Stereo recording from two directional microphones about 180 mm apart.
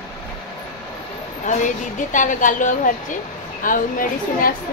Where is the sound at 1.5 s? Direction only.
45° left (ahead or behind).